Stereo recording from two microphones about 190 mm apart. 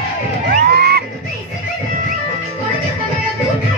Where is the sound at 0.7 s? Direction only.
60° right (ahead or behind).